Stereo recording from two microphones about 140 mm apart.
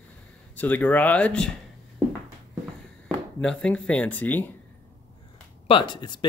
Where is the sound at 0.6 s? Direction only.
10° left (ahead or behind).